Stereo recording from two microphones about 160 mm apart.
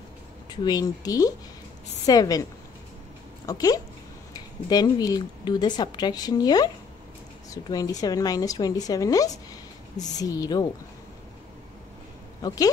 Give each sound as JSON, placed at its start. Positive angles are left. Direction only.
{"t": 0.5, "sound": "a woman's voice", "side_deg": 25}
{"t": 3.4, "sound": "a woman's voice", "side_deg": 25}
{"t": 12.4, "sound": "a woman's voice", "side_deg": 25}